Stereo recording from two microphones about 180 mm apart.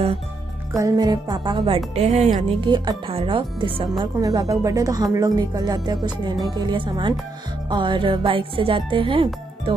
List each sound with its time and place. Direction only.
0.7 s speech: 20° right (ahead or behind)
2.0 s speech: 40° right (ahead or behind)
2.6 s speech: 25° right (ahead or behind)